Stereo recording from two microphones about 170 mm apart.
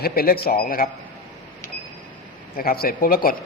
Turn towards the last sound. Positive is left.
turn(degrees=60)  # may be behind; listen again after turning